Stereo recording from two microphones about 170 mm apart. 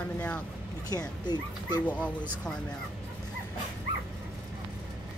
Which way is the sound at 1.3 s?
25° left (ahead or behind).